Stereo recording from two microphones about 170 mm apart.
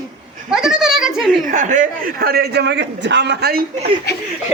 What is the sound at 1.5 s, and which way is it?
A man's voice, 50° right (ahead or behind).